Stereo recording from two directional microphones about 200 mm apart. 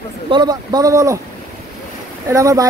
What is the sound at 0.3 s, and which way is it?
Speech, 20° right (ahead or behind).